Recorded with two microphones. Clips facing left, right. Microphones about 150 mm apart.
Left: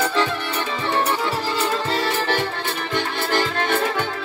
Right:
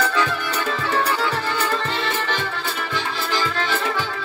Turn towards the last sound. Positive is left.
turn(degrees=55)  # may be behind; listen again after turning